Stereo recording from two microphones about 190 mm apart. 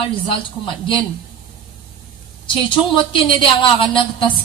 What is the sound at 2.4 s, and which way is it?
A woman's voice, 25° left (ahead or behind).